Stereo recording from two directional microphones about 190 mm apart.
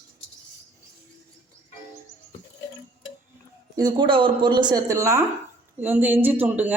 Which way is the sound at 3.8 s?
20° right (ahead or behind).